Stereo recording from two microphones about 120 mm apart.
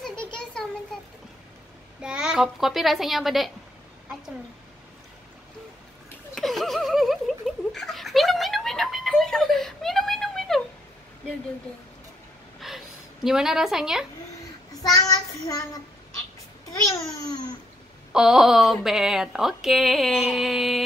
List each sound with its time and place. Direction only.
0.0 s a sound: 5° left (ahead or behind)
2.0 s a woman's voice: 5° right (ahead or behind)
6.3 s giggle: centre (ahead or behind)
12.5 s a sound: centre (ahead or behind)
14.7 s child singing: 30° left (ahead or behind)
18.1 s speech: 5° right (ahead or behind)